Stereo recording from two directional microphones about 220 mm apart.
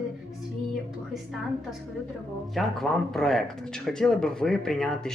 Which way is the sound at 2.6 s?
Centre (ahead or behind).